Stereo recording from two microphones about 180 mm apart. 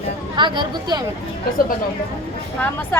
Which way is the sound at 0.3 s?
25° right (ahead or behind).